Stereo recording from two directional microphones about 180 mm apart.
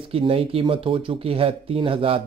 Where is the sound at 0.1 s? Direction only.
30° right (ahead or behind).